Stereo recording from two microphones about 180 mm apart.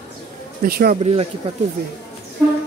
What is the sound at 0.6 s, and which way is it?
Speech, 55° right (ahead or behind).